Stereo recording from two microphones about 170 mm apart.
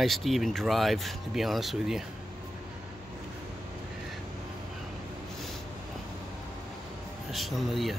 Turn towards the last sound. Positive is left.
turn(degrees=0)  # may be behind; listen again after turning